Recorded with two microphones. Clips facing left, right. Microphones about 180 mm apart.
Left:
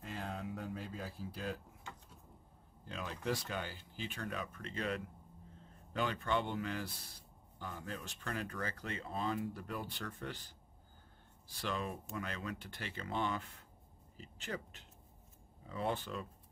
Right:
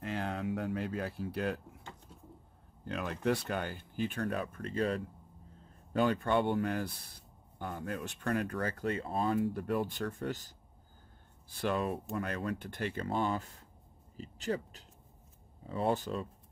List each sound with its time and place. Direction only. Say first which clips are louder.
0.0 s a sound: right 7 dB; 75° right (ahead or behind)
2.8 s speech: right 8 dB; 60° right (ahead or behind); by 5.0 s 35° right (ahead or behind)
5.9 s speech: right 7 dB; 50° right (ahead or behind)
9.5 s speech: right 10 dB; 55° right (ahead or behind)
11.5 s speech: right 7 dB; 55° right (ahead or behind); by 16.3 s 40° right (ahead or behind)